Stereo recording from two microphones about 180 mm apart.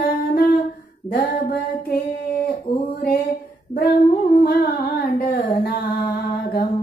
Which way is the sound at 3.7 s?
60° left (ahead or behind).